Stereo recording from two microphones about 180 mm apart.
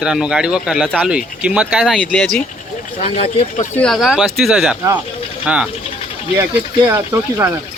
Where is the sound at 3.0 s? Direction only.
35° left (ahead or behind).